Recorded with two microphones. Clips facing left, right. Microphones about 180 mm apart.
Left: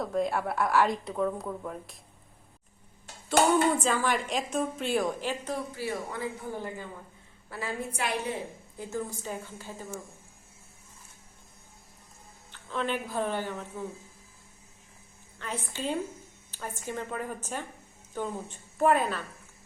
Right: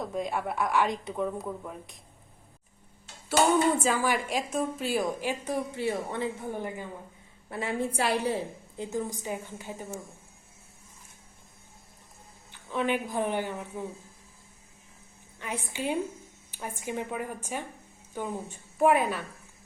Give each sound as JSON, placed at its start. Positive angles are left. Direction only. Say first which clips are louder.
{"t": 0.0, "sound": "a woman's voice", "louder": "left 3 dB", "side_deg": 0}
{"t": 3.4, "sound": "dishes", "louder": "even", "side_deg": 60}
{"t": 3.8, "sound": "a woman's voice", "louder": "right 1 dB", "side_deg": -5}
{"t": 5.8, "sound": "a woman's voice", "louder": "right 3 dB", "side_deg": -25}
{"t": 8.8, "sound": "a woman's voice", "louder": "right 2 dB", "side_deg": -15}
{"t": 12.5, "sound": "speech", "louder": "right 3 dB", "side_deg": -15}
{"t": 15.4, "sound": "a woman's voice", "louder": "right 1 dB", "side_deg": -15}